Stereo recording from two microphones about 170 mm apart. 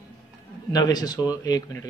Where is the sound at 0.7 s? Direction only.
25° left (ahead or behind).